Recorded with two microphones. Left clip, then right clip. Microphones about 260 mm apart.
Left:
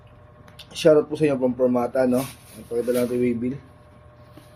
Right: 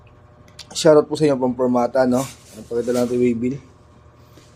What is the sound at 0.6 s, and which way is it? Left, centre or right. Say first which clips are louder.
Speech: right 3 dB; right.